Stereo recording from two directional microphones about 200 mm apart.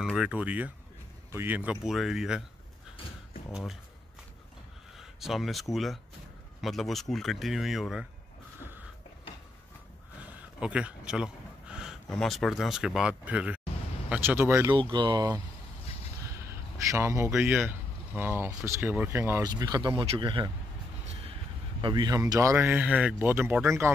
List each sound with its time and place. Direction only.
0.0 s speech: centre (ahead or behind)
4.9 s speech: centre (ahead or behind)
10.2 s speech: 5° right (ahead or behind)
16.3 s a sound: 15° right (ahead or behind)
17.6 s speech: 10° right (ahead or behind)
21.0 s vehicle: 35° right (ahead or behind)
21.8 s speech: 20° right (ahead or behind)